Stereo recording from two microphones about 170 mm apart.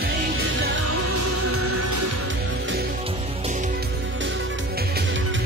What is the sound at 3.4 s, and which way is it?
Music, 45° right (ahead or behind).